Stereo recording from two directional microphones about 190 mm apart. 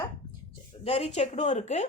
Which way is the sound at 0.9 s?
30° left (ahead or behind).